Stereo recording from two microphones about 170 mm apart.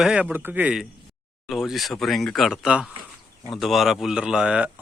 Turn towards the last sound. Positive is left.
turn(degrees=-5)  # may be behind; listen again after turning